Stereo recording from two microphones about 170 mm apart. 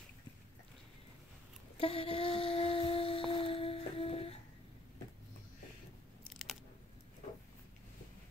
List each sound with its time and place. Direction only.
1.8 s wind instrument: 35° left (ahead or behind)
6.3 s biting: centre (ahead or behind)